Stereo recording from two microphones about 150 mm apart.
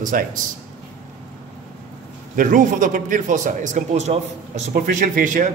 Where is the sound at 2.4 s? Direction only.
60° right (ahead or behind).